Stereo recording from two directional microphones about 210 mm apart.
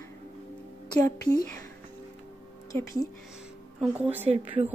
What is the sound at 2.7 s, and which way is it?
Speech, 15° left (ahead or behind).